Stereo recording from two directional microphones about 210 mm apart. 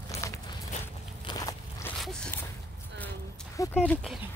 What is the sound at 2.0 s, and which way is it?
Zipper, 5° left (ahead or behind).